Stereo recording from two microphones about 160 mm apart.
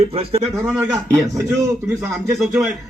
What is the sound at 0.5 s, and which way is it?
Speech, 5° right (ahead or behind).